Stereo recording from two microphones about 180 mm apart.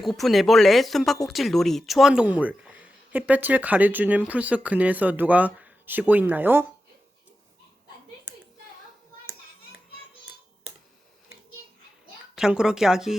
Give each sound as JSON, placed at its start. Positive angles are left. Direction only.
{"t": 0.0, "sound": "speech", "side_deg": 0}
{"t": 12.4, "sound": "speech", "side_deg": -5}